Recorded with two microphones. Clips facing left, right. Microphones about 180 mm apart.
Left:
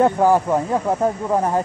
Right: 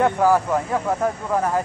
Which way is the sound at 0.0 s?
20° left (ahead or behind).